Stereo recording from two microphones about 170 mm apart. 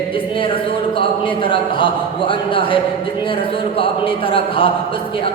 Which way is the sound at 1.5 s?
30° left (ahead or behind).